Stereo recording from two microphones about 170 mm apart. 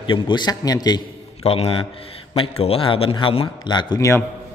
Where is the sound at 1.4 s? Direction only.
35° left (ahead or behind).